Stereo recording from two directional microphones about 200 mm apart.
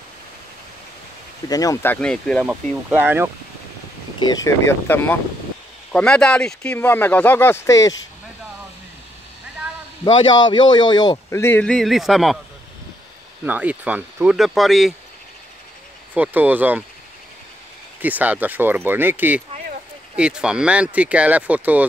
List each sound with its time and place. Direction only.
1.5 s speech: 15° left (ahead or behind); by 3.3 s 10° right (ahead or behind)
4.2 s speech: 20° left (ahead or behind)
10.0 s a man's voice: 25° left (ahead or behind); by 12.4 s centre (ahead or behind)
13.5 s speech: 5° right (ahead or behind)
16.2 s speech: 10° right (ahead or behind)
18.0 s speech: 10° right (ahead or behind)